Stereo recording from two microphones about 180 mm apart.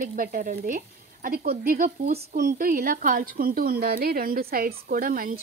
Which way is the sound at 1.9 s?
35° right (ahead or behind).